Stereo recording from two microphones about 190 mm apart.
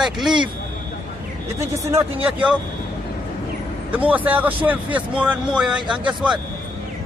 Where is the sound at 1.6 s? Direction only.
15° right (ahead or behind).